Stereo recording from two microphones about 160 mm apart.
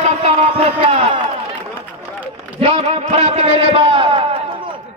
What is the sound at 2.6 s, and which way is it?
A man's voice, 40° right (ahead or behind).